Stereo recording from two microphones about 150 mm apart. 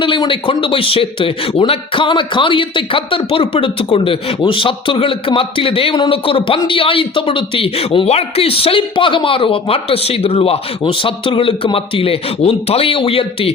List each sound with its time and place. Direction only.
0.0 s speech: 35° left (ahead or behind)